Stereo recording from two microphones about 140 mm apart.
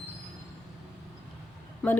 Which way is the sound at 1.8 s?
5° left (ahead or behind).